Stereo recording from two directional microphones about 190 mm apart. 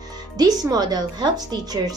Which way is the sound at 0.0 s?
20° right (ahead or behind).